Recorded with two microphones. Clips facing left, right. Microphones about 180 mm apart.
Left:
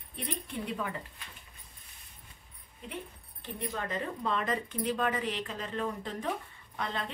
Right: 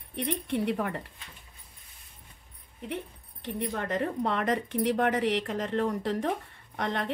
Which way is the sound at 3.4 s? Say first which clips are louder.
Right 5 dB; 70° right (ahead or behind).